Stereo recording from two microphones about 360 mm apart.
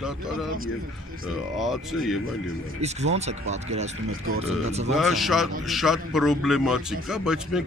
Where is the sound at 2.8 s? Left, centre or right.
Centre.